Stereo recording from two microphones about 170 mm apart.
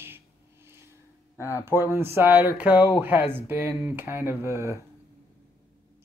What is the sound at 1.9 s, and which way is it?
Speech, 15° right (ahead or behind).